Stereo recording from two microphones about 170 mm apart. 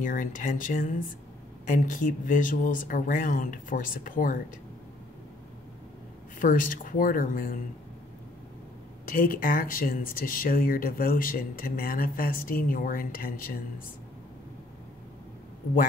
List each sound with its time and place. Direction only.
0.0 s speech: 50° left (ahead or behind)
6.4 s speech: 55° left (ahead or behind)
9.0 s speech: 55° left (ahead or behind)